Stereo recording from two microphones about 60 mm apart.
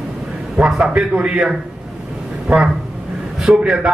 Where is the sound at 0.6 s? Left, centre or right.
Centre.